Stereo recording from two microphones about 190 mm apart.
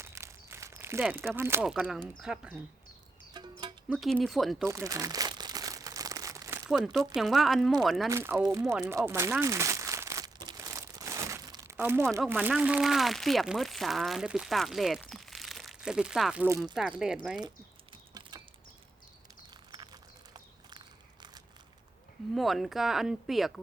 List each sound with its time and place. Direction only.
0.0 s a sound: 15° right (ahead or behind)
1.4 s speech: 15° right (ahead or behind)
1.6 s speech: centre (ahead or behind)
3.3 s music: 20° right (ahead or behind)
3.8 s speech: centre (ahead or behind)
4.6 s crumpling: 15° right (ahead or behind)
6.7 s speech: centre (ahead or behind)
8.1 s speech: 10° right (ahead or behind)
9.4 s crumpling: 15° right (ahead or behind)
11.8 s speech: 10° right (ahead or behind)
18.1 s a sound: 20° right (ahead or behind)
19.7 s a sound: 20° right (ahead or behind)
22.4 s speech: centre (ahead or behind)